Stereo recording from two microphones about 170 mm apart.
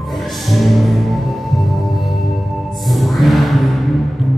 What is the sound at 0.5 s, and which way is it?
Music, centre (ahead or behind).